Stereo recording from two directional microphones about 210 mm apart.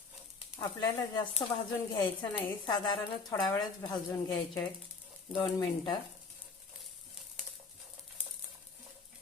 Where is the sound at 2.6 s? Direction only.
20° left (ahead or behind).